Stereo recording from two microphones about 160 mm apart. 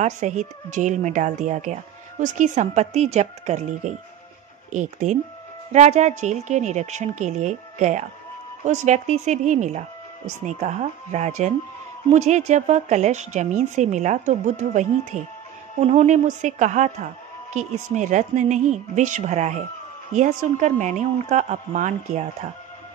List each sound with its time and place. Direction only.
0.0 s speech: 50° right (ahead or behind)